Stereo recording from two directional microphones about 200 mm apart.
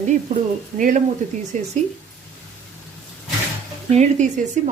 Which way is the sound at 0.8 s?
40° right (ahead or behind).